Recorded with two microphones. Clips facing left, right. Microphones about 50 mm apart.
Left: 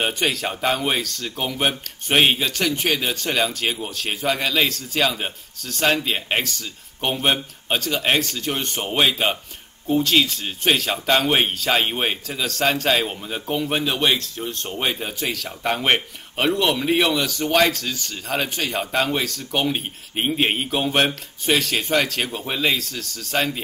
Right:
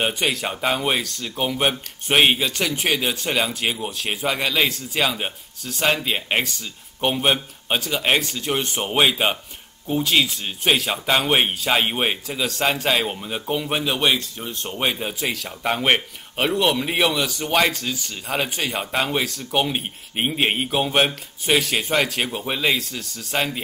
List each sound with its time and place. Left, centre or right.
0.0 s speech: centre